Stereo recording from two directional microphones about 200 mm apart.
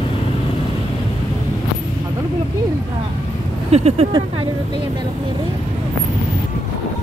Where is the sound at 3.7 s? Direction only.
30° right (ahead or behind).